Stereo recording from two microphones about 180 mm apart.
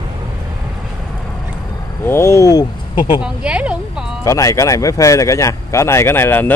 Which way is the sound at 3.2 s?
5° right (ahead or behind).